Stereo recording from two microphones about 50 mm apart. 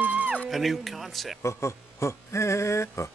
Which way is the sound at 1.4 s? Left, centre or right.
Left.